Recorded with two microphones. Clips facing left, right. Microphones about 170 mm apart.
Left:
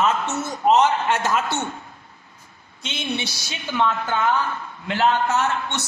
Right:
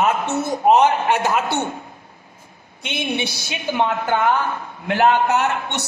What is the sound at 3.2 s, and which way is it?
Speech, 55° right (ahead or behind).